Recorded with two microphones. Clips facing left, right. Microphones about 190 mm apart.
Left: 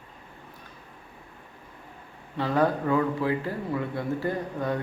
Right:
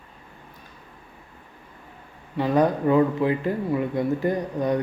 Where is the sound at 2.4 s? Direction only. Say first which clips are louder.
Right 4 dB; 15° right (ahead or behind).